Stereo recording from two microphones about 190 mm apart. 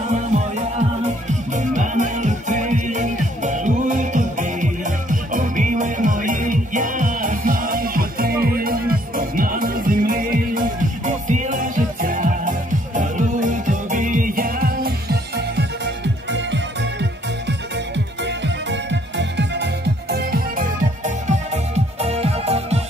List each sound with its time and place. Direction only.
0.1 s music: 35° right (ahead or behind)